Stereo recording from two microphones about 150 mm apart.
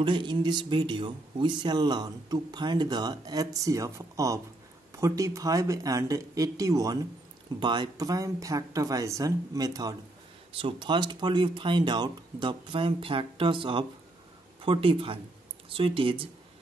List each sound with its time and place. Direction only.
0.0 s speech: 35° right (ahead or behind)
10.5 s speech: 35° right (ahead or behind)